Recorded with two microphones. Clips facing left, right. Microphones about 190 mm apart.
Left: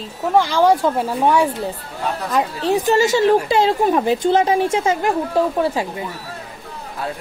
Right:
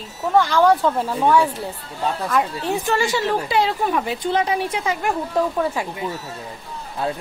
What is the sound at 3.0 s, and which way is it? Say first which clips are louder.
Speech: left 7 dB; 45° left (ahead or behind).